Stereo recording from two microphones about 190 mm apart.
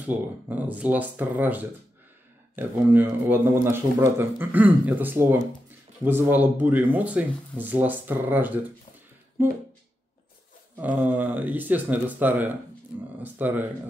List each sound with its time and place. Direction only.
0.0 s speech: 10° right (ahead or behind)
10.8 s speech: 10° right (ahead or behind)